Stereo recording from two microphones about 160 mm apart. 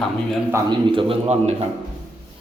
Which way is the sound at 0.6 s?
35° right (ahead or behind).